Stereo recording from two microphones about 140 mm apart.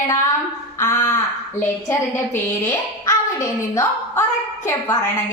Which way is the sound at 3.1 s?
20° left (ahead or behind).